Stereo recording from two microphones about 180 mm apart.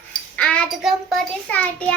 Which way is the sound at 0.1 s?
5° left (ahead or behind).